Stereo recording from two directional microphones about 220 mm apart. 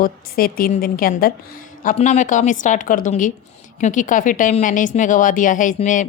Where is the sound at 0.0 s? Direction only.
40° left (ahead or behind).